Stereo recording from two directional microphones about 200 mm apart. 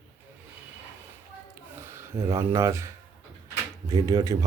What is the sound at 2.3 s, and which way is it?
A man's voice, 15° right (ahead or behind).